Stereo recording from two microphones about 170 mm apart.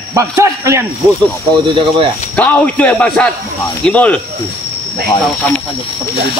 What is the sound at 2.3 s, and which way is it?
Speech, 10° left (ahead or behind).